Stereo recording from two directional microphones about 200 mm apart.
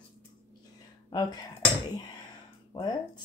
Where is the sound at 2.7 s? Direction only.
20° left (ahead or behind).